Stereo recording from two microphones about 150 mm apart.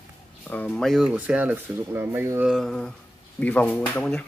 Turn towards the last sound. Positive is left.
turn(degrees=10)  # may be behind; listen again after turning